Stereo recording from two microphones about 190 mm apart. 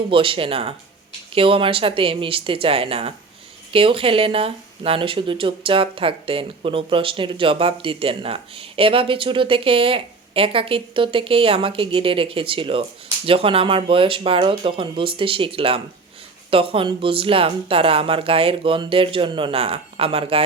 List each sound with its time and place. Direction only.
0.1 s speech: 30° right (ahead or behind)